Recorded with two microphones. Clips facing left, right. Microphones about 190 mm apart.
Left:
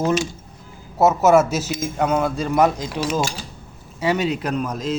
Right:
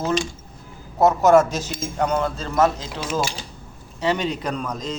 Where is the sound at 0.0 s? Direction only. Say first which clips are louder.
Left 3 dB; 5° left (ahead or behind).